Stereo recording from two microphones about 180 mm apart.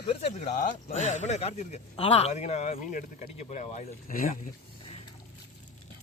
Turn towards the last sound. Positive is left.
turn(degrees=30)  # may be behind; listen again after turning